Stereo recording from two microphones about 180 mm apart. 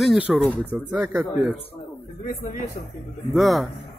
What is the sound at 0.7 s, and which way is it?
Speech, 10° right (ahead or behind).